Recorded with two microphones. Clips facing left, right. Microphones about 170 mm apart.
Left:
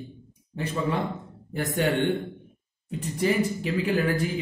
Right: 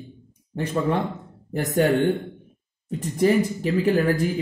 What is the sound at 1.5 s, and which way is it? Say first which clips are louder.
Speech: right 5 dB; 40° right (ahead or behind).